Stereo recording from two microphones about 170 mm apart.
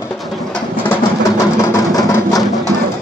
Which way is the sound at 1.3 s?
20° left (ahead or behind).